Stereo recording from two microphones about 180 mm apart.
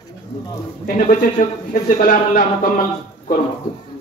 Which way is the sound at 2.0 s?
50° left (ahead or behind).